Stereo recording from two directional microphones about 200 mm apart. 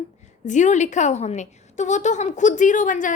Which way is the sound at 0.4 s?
35° left (ahead or behind).